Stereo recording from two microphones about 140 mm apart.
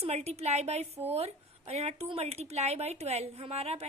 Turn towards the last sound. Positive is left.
turn(degrees=-45)  # may be behind; listen again after turning